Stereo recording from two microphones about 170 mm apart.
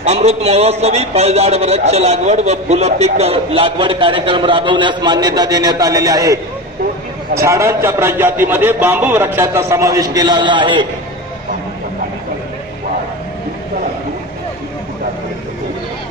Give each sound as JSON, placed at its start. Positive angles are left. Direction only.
{"t": 0.0, "sound": "a man's voice", "side_deg": -40}